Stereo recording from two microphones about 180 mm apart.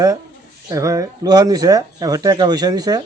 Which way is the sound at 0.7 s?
15° right (ahead or behind).